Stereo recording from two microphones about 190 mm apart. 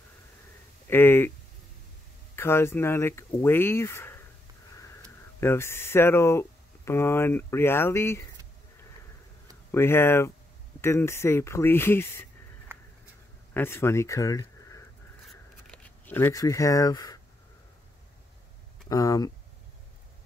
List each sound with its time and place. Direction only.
0.8 s speech: 10° left (ahead or behind)
2.3 s speech: 15° left (ahead or behind)
9.7 s speech: 10° left (ahead or behind)
12.7 s a sound: 10° right (ahead or behind)
13.5 s speech: 10° left (ahead or behind)
15.2 s a sound: 5° left (ahead or behind)
18.9 s speech: 20° left (ahead or behind)